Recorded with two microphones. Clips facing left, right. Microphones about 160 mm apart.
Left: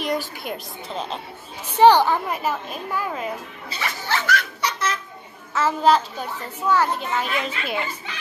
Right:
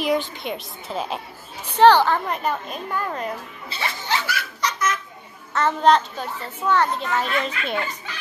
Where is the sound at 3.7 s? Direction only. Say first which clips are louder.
Even; 30° right (ahead or behind).